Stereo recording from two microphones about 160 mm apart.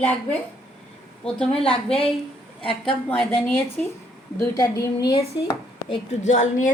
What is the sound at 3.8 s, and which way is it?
Speech, 5° left (ahead or behind).